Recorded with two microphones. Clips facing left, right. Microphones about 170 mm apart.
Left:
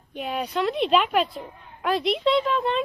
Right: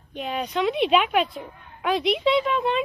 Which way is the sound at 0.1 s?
5° left (ahead or behind).